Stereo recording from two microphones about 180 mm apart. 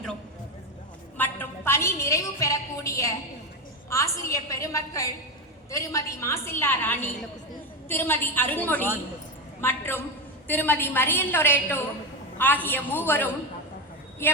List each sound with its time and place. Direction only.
1.1 s a woman's voice: 10° left (ahead or behind)